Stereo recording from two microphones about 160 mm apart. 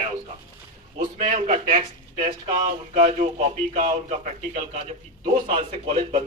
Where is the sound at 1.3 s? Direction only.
50° right (ahead or behind).